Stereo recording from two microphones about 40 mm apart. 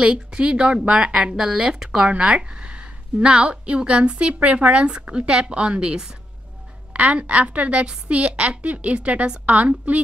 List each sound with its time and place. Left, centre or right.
0.0 s a woman's voice: right
1.1 s a woman's voice: centre
6.9 s speech: right